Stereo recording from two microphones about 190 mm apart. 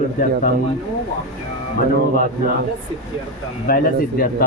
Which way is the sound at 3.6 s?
50° left (ahead or behind).